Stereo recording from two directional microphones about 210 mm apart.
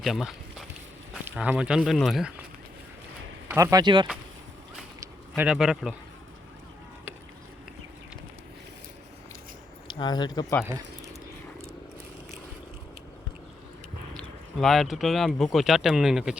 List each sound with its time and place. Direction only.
0.0 s speech: centre (ahead or behind)
3.5 s speech: 15° right (ahead or behind)
5.3 s speech: 5° right (ahead or behind)
9.8 s speech: 20° left (ahead or behind)
14.1 s speech: centre (ahead or behind)